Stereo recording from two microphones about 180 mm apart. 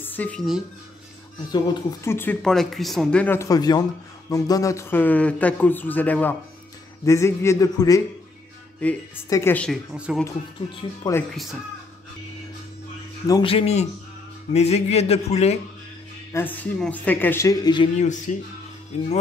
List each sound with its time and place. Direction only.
0.0 s music: 10° left (ahead or behind)
1.5 s speech: 20° left (ahead or behind)
8.8 s speech: 5° left (ahead or behind)
9.9 s speech: 5° right (ahead or behind)
13.3 s speech: 30° left (ahead or behind)
16.3 s speech: 10° left (ahead or behind)
17.9 s speech: 40° left (ahead or behind)